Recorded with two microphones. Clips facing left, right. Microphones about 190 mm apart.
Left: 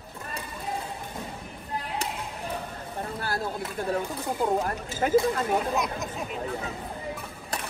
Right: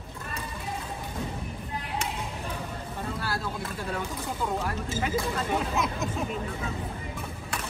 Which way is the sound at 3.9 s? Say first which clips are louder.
Left 5 dB; 35° left (ahead or behind).